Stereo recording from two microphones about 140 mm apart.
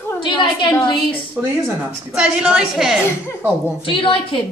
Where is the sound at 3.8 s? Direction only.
40° left (ahead or behind).